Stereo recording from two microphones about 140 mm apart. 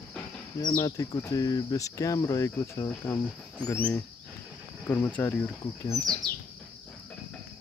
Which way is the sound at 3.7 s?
10° left (ahead or behind).